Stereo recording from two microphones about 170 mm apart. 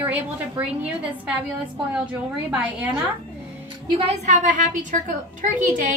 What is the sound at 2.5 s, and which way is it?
Speech, 10° right (ahead or behind).